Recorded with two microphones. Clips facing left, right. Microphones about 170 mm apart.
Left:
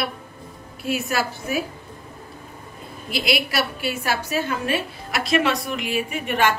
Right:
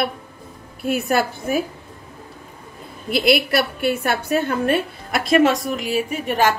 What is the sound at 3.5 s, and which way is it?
A woman's voice, 55° right (ahead or behind).